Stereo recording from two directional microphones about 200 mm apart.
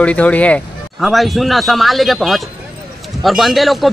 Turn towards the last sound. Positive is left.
turn(degrees=0)  # may be behind; listen again after turning